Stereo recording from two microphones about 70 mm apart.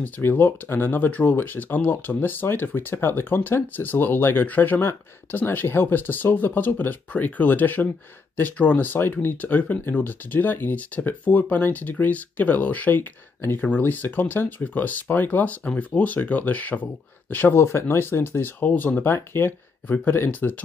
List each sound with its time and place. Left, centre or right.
0.0 s speech: left
17.6 s speech: left
18.6 s speech: left